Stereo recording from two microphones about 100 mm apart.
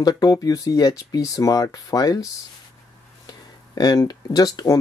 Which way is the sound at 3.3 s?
40° left (ahead or behind).